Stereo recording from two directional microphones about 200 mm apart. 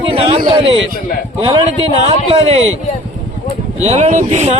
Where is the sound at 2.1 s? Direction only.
30° right (ahead or behind).